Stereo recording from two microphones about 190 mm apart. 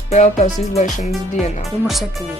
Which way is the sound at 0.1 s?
40° left (ahead or behind).